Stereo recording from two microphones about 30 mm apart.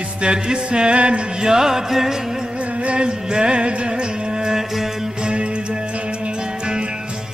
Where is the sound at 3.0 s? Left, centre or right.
Right.